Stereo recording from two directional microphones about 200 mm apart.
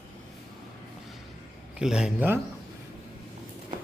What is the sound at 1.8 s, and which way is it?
Speech, 5° right (ahead or behind).